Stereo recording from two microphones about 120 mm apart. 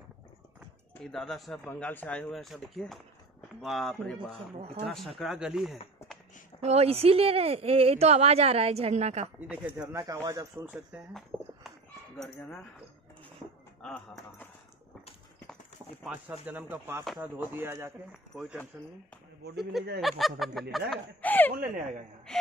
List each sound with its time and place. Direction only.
1.0 s speech: 5° left (ahead or behind)
1.6 s speech: 15° left (ahead or behind)
2.3 s speech: centre (ahead or behind)
6.6 s speech: 60° right (ahead or behind)
9.5 s speech: 15° right (ahead or behind)
9.9 s speech: 30° right (ahead or behind)
10.6 s speech: 10° right (ahead or behind)
11.3 s a sound: 20° right (ahead or behind)
13.8 s speech: 10° left (ahead or behind)
16.1 s speech: 15° right (ahead or behind)
18.3 s speech: centre (ahead or behind)
21.2 s a sound: 15° left (ahead or behind)